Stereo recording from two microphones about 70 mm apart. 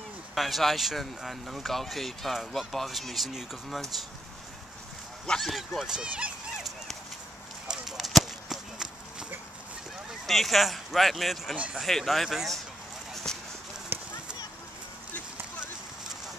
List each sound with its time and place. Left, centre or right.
0.3 s speech: centre
5.2 s speech: centre
5.5 s speech: centre
5.9 s speech: centre
7.6 s a sound: centre
10.2 s speech: centre
11.5 s speech: centre
11.8 s speech: centre
13.1 s a sound: centre
13.9 s clip-clop: right